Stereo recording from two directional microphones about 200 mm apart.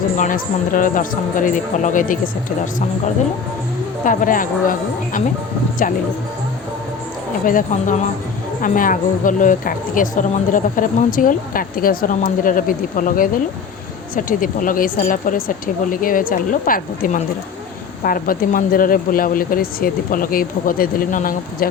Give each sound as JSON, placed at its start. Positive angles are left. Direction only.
{"t": 0.2, "sound": "speech", "side_deg": 40}
{"t": 4.0, "sound": "speech", "side_deg": 40}
{"t": 7.4, "sound": "speech", "side_deg": 40}